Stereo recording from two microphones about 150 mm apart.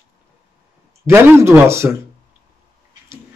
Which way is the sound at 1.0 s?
15° right (ahead or behind).